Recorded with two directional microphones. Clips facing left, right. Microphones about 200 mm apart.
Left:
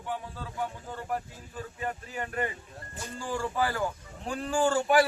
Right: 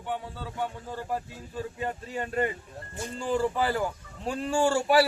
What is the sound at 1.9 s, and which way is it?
Speech, 25° right (ahead or behind).